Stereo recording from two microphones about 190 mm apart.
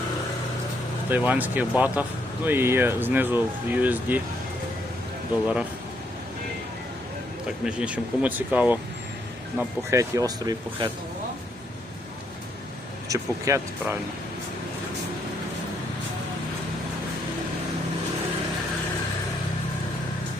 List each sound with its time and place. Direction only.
1.1 s speech: 10° right (ahead or behind)
7.6 s speech: 5° right (ahead or behind)
13.1 s speech: 15° right (ahead or behind)